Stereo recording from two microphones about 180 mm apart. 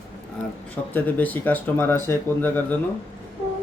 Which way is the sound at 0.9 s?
10° left (ahead or behind).